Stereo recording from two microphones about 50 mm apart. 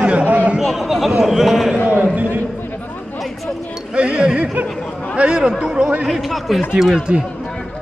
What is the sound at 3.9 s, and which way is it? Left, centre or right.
Speech, right.